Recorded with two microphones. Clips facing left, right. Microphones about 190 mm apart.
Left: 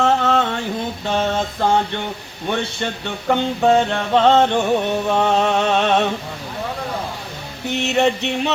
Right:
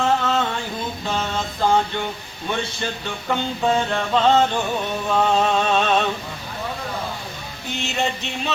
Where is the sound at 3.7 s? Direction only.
65° left (ahead or behind).